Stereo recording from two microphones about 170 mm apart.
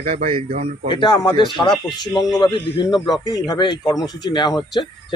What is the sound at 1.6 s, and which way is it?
Speech, 10° left (ahead or behind).